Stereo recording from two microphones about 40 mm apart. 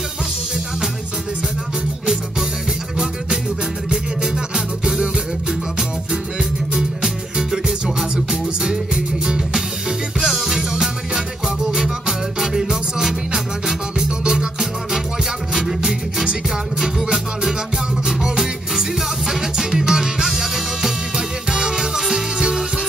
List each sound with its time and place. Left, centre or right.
3.9 s music: centre
6.7 s music: centre
10.2 s music: centre